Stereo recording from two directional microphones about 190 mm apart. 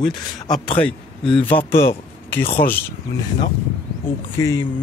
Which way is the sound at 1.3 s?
25° left (ahead or behind).